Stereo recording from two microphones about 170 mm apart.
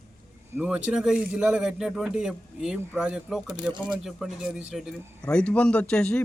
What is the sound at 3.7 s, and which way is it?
Speech, 25° right (ahead or behind).